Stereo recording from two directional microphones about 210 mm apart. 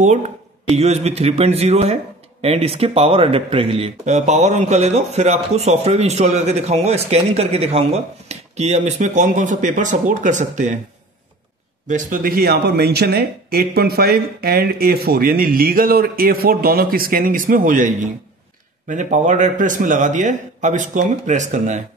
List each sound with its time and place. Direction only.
0.0 s speech: 35° right (ahead or behind)
11.9 s speech: 40° right (ahead or behind)